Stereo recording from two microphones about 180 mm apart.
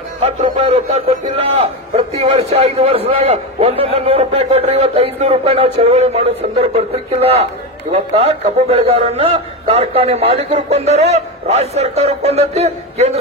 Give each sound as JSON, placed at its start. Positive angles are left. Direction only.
{"t": 0.2, "sound": "a man's voice", "side_deg": -35}